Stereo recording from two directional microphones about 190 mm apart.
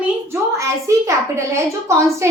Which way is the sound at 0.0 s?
15° right (ahead or behind).